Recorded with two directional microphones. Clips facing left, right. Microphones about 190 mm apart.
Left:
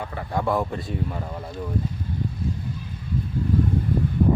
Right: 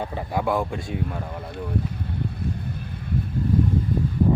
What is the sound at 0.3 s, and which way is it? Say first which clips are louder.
Speech: left 1 dB; 5° right (ahead or behind).